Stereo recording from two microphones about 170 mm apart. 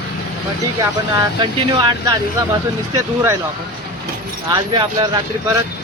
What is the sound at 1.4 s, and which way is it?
Speech, 25° right (ahead or behind).